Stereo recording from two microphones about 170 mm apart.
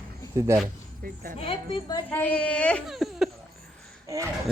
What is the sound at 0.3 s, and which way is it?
Speech, 15° right (ahead or behind).